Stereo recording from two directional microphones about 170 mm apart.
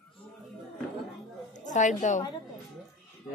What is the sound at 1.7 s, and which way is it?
Speech, 45° left (ahead or behind).